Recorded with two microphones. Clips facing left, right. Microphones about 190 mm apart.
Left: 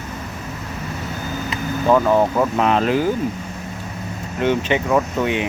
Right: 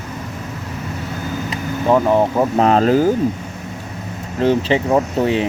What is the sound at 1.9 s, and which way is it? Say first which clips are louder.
Speech: right 1 dB; 20° right (ahead or behind).